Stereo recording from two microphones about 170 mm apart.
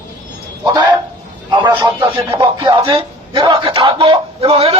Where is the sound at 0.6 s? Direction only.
25° right (ahead or behind).